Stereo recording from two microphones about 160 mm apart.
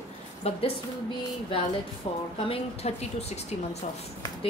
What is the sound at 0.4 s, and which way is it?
Speech, 40° left (ahead or behind).